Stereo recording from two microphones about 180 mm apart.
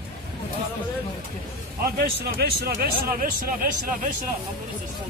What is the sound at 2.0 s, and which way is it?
Speech, 60° right (ahead or behind).